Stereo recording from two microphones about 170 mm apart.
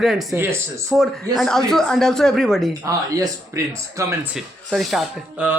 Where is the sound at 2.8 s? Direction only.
20° right (ahead or behind).